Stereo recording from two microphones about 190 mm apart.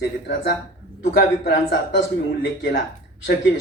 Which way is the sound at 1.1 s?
70° left (ahead or behind).